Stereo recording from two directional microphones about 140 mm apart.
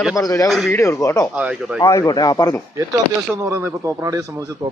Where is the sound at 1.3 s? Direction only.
5° right (ahead or behind).